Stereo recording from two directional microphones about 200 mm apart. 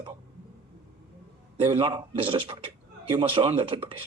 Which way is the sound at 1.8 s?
25° right (ahead or behind).